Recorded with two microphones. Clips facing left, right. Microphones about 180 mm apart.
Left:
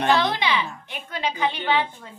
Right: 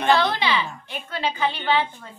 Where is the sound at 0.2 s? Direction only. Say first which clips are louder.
Right 1 dB; 20° left (ahead or behind).